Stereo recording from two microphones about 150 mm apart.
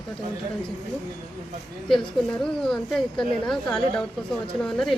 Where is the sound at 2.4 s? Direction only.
5° left (ahead or behind).